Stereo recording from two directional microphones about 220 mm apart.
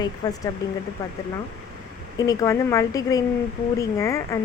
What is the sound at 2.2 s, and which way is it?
Speech, 15° left (ahead or behind).